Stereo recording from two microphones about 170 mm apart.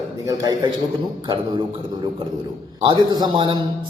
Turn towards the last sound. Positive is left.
turn(degrees=-25)  # may be behind; listen again after turning